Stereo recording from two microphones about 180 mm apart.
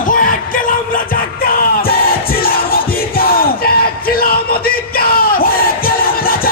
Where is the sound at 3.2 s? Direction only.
55° left (ahead or behind).